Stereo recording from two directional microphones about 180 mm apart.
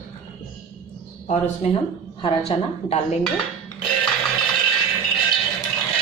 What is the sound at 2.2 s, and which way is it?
Speech, 35° left (ahead or behind).